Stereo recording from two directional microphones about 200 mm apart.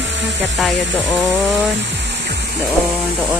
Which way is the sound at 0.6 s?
Centre (ahead or behind).